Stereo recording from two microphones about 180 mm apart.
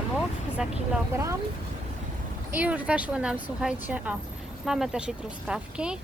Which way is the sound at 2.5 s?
10° right (ahead or behind).